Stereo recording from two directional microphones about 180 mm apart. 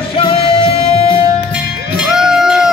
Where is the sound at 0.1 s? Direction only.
35° left (ahead or behind).